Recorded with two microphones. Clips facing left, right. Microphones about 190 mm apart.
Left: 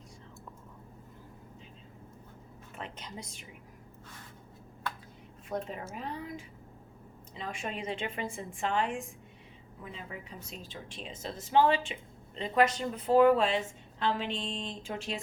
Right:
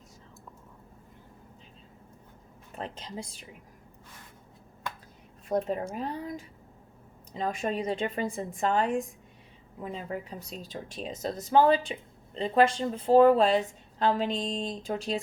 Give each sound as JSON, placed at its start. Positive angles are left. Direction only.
{"t": 2.7, "sound": "a woman's voice", "side_deg": -30}
{"t": 5.5, "sound": "a woman's voice", "side_deg": -40}